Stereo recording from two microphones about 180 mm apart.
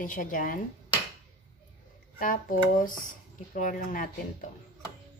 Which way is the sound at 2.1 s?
50° left (ahead or behind).